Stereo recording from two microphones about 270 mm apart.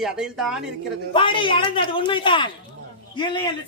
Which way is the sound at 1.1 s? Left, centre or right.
Centre.